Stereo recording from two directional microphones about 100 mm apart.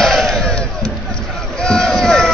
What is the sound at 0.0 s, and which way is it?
Crowd, centre (ahead or behind).